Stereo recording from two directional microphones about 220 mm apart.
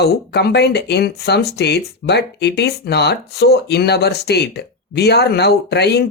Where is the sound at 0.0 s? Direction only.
45° left (ahead or behind).